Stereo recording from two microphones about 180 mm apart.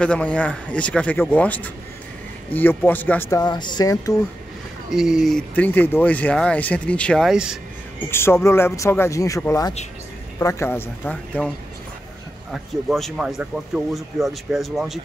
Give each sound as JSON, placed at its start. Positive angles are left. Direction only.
{"t": 0.0, "sound": "speech", "side_deg": 5}
{"t": 4.9, "sound": "speech", "side_deg": 0}
{"t": 8.1, "sound": "speech", "side_deg": 15}
{"t": 12.5, "sound": "speech", "side_deg": 0}